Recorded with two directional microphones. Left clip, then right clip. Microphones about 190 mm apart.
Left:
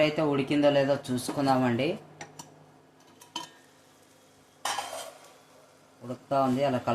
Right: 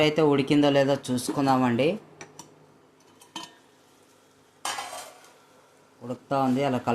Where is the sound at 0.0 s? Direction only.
30° right (ahead or behind).